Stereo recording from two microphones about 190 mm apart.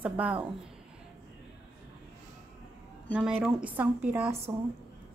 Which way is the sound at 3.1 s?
5° right (ahead or behind).